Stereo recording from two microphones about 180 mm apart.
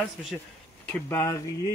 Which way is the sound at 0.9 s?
15° left (ahead or behind).